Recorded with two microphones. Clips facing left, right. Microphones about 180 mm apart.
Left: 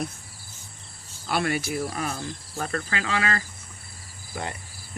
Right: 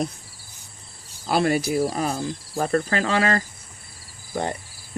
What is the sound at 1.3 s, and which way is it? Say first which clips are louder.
Cricket: right 5 dB; 35° right (ahead or behind).